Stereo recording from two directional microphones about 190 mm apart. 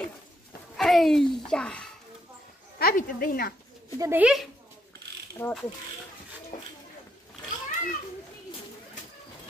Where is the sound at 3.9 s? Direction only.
15° right (ahead or behind).